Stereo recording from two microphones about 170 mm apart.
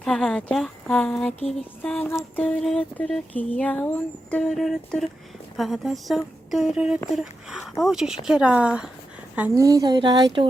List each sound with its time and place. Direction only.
0.0 s a woman's voice: centre (ahead or behind)
9.6 s speech: 20° right (ahead or behind)